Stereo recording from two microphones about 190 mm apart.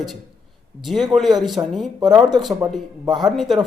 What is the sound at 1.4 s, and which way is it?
Speech, centre (ahead or behind).